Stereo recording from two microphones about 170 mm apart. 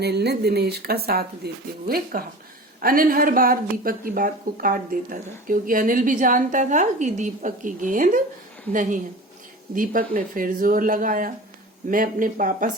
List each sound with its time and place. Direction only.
0.0 s speech: 75° right (ahead or behind); by 12.7 s 50° right (ahead or behind)